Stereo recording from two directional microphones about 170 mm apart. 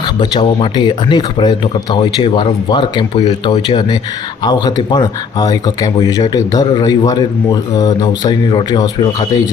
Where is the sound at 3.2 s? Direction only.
40° left (ahead or behind).